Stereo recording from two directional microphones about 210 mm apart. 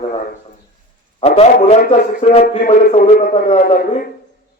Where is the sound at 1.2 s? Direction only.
30° left (ahead or behind).